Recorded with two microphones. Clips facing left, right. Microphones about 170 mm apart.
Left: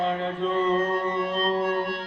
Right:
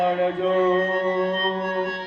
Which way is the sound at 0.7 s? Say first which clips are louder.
Right 4 dB; 55° right (ahead or behind).